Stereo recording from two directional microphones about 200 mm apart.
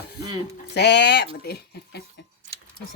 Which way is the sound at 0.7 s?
55° left (ahead or behind).